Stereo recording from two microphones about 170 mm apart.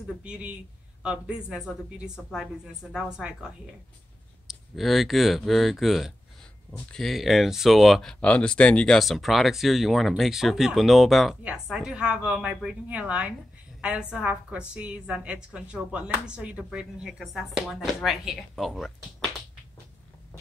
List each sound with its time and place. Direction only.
0.2 s a woman's voice: 5° right (ahead or behind)